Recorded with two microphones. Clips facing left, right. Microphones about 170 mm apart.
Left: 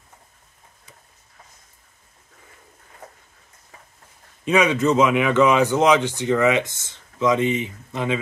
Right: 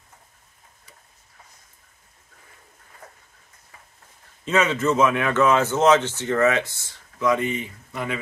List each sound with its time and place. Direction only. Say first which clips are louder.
4.5 s speech: left 3 dB; 15° left (ahead or behind)